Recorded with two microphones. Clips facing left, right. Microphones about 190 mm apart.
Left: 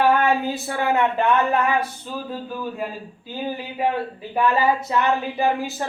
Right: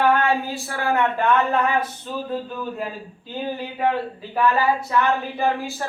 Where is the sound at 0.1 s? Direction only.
20° left (ahead or behind).